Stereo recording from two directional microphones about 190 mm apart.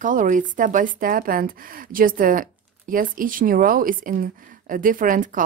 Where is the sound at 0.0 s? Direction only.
45° right (ahead or behind).